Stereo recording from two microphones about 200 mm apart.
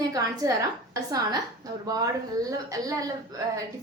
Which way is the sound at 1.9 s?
20° right (ahead or behind).